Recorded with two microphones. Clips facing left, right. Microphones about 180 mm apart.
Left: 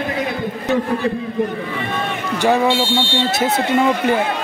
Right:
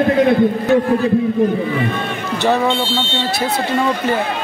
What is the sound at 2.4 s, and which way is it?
A man's voice, 15° left (ahead or behind).